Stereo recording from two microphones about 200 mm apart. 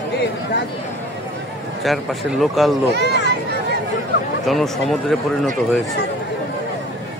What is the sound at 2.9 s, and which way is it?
Speech, 55° right (ahead or behind).